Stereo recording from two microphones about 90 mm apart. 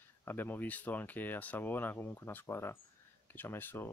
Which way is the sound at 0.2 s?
25° left (ahead or behind).